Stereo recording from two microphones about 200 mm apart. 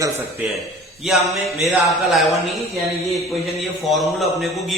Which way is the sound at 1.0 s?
Centre (ahead or behind).